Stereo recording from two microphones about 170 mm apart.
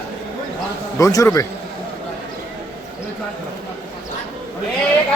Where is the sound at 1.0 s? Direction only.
20° left (ahead or behind).